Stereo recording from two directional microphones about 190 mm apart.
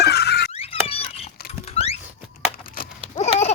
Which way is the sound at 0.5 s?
30° left (ahead or behind).